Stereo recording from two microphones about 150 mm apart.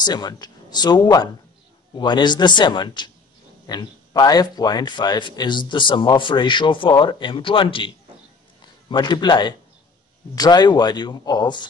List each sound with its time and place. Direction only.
0.0 s speech: 25° left (ahead or behind)